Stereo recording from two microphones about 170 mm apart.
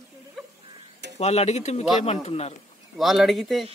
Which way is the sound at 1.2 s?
40° left (ahead or behind).